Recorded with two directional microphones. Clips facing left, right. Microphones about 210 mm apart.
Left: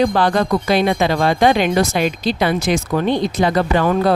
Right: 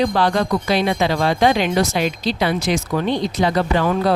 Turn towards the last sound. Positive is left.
turn(degrees=50)  # may be behind; listen again after turning